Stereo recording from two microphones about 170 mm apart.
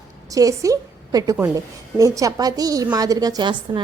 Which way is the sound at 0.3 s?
20° right (ahead or behind).